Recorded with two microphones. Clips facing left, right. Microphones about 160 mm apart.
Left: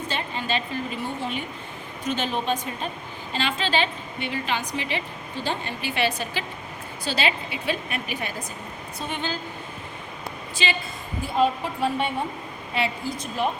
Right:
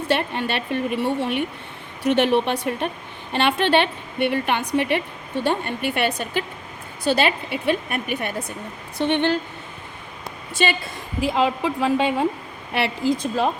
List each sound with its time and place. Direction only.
0.1 s a woman's voice: 65° right (ahead or behind)
9.0 s a woman's voice: 75° right (ahead or behind)
10.6 s a woman's voice: 55° right (ahead or behind)
11.2 s a woman's voice: 90° right